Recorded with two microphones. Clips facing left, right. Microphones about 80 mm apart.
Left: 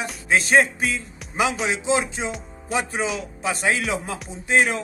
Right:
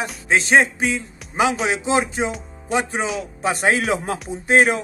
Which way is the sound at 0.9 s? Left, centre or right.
Right.